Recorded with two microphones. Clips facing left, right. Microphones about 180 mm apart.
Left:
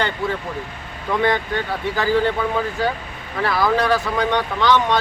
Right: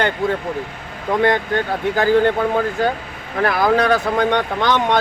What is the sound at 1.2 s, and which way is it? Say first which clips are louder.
Speech: right 3 dB; 50° right (ahead or behind).